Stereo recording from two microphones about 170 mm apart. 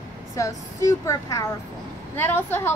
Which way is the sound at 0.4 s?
20° left (ahead or behind).